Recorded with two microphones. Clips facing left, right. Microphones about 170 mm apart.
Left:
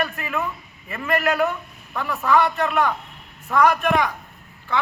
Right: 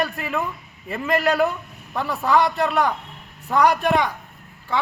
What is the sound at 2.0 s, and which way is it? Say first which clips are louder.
A man's voice: even; 35° right (ahead or behind).